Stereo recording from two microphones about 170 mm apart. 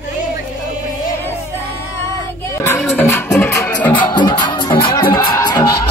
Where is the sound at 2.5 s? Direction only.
15° left (ahead or behind).